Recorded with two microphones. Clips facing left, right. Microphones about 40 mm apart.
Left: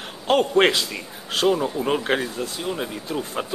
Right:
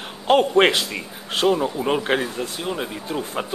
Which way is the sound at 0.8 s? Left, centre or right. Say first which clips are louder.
Right 2 dB; centre.